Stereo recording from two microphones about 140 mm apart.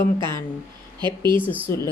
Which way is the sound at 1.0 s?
35° right (ahead or behind).